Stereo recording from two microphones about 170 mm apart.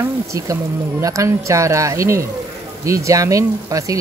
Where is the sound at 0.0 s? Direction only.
20° right (ahead or behind).